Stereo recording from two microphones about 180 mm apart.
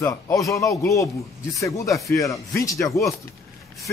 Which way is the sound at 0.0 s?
20° left (ahead or behind).